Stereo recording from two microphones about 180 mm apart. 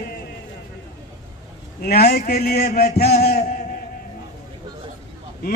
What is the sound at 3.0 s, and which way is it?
Chant, 40° left (ahead or behind).